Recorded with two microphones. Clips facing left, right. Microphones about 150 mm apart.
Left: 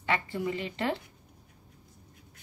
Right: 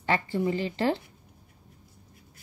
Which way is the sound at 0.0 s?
30° right (ahead or behind).